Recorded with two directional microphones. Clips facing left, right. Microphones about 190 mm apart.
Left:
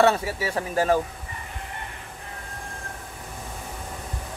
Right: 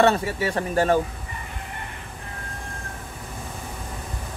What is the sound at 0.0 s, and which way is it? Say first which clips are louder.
Speech: right 1 dB; 5° left (ahead or behind).